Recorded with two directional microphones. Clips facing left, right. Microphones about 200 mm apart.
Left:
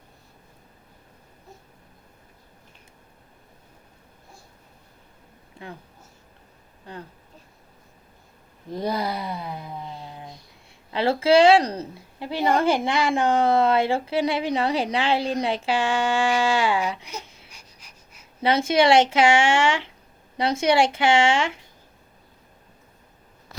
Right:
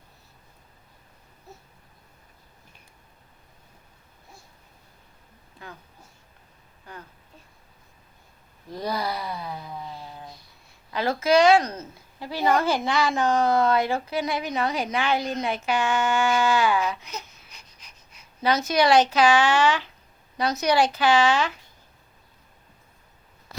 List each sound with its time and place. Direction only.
5.6 s a sound: 25° left (ahead or behind)
6.8 s speech: 30° left (ahead or behind)
8.7 s a sound: 20° left (ahead or behind)
10.9 s a woman's voice: 30° left (ahead or behind)
12.2 s speech: 20° left (ahead or behind)
17.5 s pant: 10° left (ahead or behind)
18.4 s speech: 25° left (ahead or behind)